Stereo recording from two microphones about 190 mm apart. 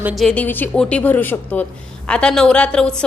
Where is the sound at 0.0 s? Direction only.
Centre (ahead or behind).